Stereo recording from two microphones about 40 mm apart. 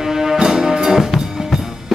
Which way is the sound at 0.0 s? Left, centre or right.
Centre.